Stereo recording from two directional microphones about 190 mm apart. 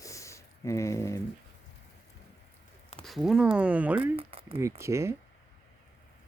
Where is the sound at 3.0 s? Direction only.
Centre (ahead or behind).